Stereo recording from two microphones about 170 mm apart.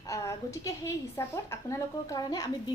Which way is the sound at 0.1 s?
20° left (ahead or behind).